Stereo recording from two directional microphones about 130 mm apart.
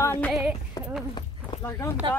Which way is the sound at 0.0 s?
15° left (ahead or behind).